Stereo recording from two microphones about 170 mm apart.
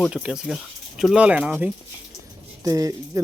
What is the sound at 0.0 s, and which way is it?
Speech, 5° right (ahead or behind).